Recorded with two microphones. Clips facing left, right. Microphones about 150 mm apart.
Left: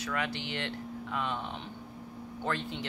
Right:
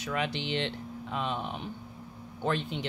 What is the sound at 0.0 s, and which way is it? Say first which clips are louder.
Speech: right 2 dB; 20° right (ahead or behind).